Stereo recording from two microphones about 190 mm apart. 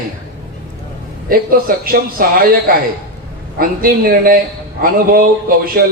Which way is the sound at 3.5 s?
50° right (ahead or behind).